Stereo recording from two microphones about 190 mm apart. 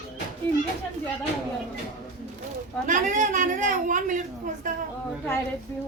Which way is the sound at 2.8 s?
40° right (ahead or behind).